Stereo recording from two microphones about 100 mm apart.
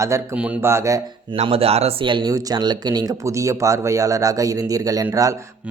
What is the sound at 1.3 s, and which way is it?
Speech, 75° right (ahead or behind).